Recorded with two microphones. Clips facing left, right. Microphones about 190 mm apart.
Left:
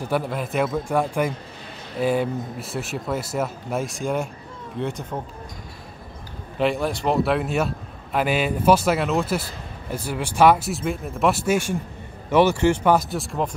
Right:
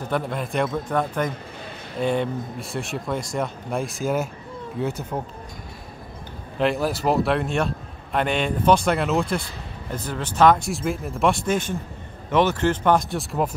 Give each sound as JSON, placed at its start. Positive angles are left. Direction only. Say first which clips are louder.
{"t": 0.1, "sound": "a man's voice", "louder": "left 1 dB", "side_deg": 5}
{"t": 6.6, "sound": "a man's voice", "louder": "even", "side_deg": 0}